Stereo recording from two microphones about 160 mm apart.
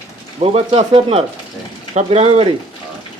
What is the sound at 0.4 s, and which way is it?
Speech, 35° right (ahead or behind).